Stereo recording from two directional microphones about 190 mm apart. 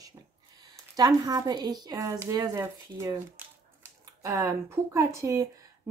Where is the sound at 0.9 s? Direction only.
20° right (ahead or behind).